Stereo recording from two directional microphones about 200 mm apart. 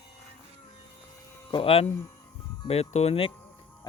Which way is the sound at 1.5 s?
30° left (ahead or behind).